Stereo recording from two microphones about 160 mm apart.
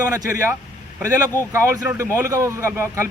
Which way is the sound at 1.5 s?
15° right (ahead or behind).